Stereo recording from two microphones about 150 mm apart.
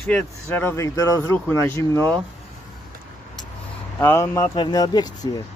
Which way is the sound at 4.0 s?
15° left (ahead or behind).